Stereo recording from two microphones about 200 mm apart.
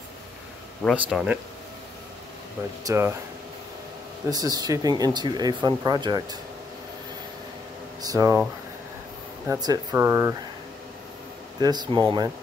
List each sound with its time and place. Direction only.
0.8 s speech: 5° right (ahead or behind)
2.8 s speech: 15° right (ahead or behind)
4.3 s speech: 20° right (ahead or behind)
8.0 s speech: 15° right (ahead or behind)
9.5 s speech: 15° right (ahead or behind)
11.6 s speech: 20° right (ahead or behind)